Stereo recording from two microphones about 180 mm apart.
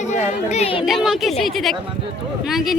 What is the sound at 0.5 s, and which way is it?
Speech, 30° left (ahead or behind).